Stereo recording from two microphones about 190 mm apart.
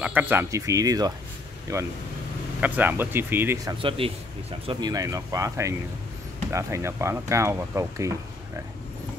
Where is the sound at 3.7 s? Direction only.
30° right (ahead or behind).